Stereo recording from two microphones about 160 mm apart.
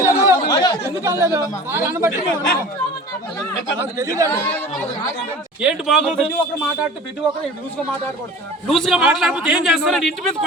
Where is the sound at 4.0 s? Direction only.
20° right (ahead or behind).